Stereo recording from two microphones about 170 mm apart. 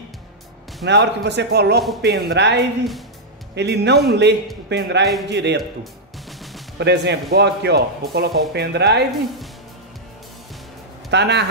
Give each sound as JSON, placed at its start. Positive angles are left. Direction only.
{"t": 0.8, "sound": "speech", "side_deg": -85}
{"t": 6.8, "sound": "speech", "side_deg": -85}
{"t": 11.1, "sound": "speech", "side_deg": -90}